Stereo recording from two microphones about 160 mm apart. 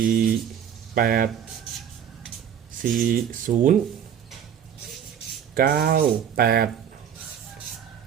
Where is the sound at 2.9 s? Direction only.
55° right (ahead or behind).